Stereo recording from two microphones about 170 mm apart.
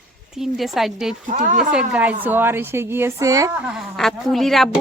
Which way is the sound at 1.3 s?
50° right (ahead or behind).